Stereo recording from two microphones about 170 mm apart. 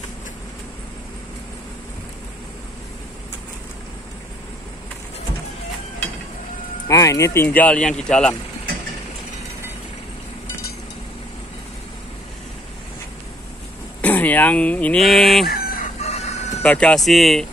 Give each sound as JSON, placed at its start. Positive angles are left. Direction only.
{"t": 6.9, "sound": "speech", "side_deg": 20}
{"t": 14.0, "sound": "speech", "side_deg": 10}
{"t": 15.4, "sound": "chicken", "side_deg": 65}
{"t": 16.0, "sound": "music", "side_deg": 40}
{"t": 16.6, "sound": "speech", "side_deg": 5}